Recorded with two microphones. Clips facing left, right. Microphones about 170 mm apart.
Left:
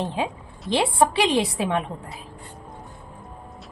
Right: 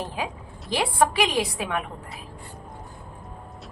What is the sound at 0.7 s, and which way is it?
A woman's voice, 25° left (ahead or behind).